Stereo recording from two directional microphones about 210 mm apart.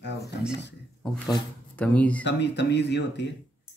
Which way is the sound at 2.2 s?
55° left (ahead or behind).